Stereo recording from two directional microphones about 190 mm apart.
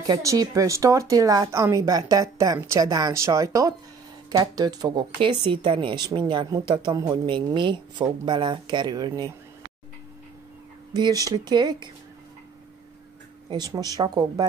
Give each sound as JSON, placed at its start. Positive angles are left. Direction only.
{"t": 0.0, "sound": "speech", "side_deg": -15}
{"t": 10.9, "sound": "speech", "side_deg": -20}
{"t": 13.5, "sound": "speech", "side_deg": -20}